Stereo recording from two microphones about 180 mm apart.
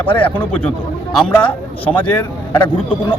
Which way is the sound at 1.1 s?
5° left (ahead or behind).